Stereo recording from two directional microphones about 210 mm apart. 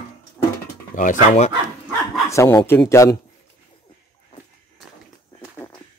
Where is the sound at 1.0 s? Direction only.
35° left (ahead or behind).